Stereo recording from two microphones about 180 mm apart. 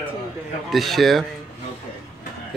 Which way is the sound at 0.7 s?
Centre (ahead or behind).